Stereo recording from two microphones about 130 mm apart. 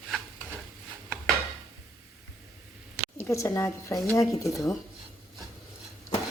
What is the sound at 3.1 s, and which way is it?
Speech, 20° left (ahead or behind).